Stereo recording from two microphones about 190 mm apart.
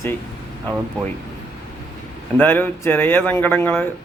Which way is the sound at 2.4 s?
10° left (ahead or behind).